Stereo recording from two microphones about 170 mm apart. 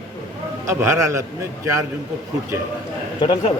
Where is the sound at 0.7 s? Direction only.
15° right (ahead or behind).